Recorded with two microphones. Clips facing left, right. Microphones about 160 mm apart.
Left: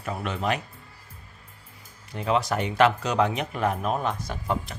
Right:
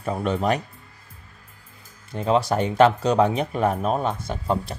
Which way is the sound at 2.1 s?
30° right (ahead or behind).